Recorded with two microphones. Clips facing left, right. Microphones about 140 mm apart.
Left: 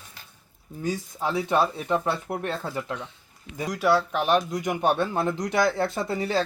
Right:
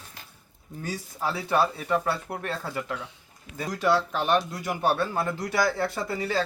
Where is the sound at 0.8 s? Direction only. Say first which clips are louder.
Left 3 dB; 20° left (ahead or behind).